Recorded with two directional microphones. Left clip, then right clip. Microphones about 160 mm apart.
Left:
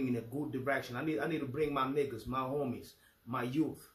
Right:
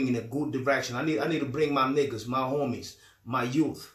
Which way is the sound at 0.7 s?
5° right (ahead or behind).